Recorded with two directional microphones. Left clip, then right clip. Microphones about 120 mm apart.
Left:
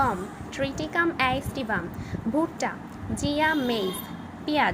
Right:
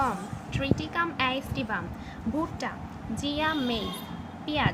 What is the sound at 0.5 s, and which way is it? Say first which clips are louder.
A woman's voice: left 2 dB; 30° left (ahead or behind).